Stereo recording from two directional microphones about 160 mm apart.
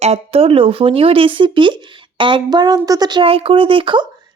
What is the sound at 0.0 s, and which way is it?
Speech, 40° right (ahead or behind).